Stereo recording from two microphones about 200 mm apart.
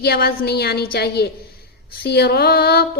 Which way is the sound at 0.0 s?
50° left (ahead or behind).